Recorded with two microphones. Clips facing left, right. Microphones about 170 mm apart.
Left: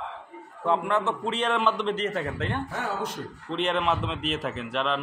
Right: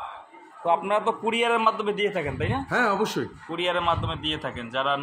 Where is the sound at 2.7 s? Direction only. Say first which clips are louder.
Right 6 dB; 90° right.